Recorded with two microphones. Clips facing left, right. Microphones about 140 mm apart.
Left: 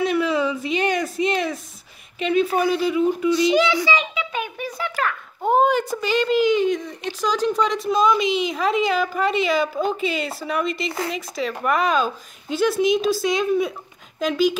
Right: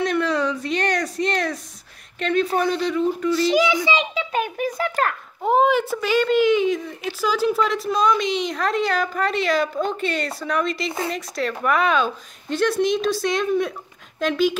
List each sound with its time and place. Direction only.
0.0 s a sound: 5° left (ahead or behind)
2.1 s speech: 5° left (ahead or behind)
3.6 s a child's voice: 20° right (ahead or behind)
3.9 s a child's voice: 35° right (ahead or behind)
5.4 s speech: centre (ahead or behind)